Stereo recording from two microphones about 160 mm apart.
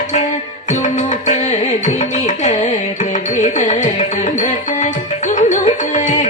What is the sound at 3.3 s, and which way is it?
Carnatic music, 50° left (ahead or behind).